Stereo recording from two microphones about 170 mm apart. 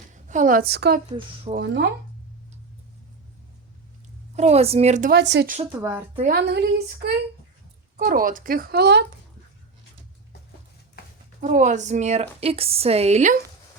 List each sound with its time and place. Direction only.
0.1 s a woman's voice: 45° right (ahead or behind); by 1.9 s 75° right (ahead or behind)
4.4 s a woman's voice: 40° right (ahead or behind)
5.1 s speech: 85° right
5.7 s speech: 15° right (ahead or behind)
6.2 s a woman's voice: 75° right (ahead or behind)
7.9 s speech: 55° right (ahead or behind); by 9.0 s 80° right
11.3 s a woman's voice: 50° right (ahead or behind)